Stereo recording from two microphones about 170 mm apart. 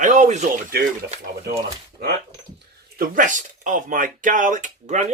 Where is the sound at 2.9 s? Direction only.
55° right (ahead or behind).